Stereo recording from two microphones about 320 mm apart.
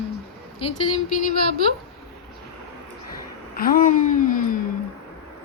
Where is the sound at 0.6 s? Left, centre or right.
Centre.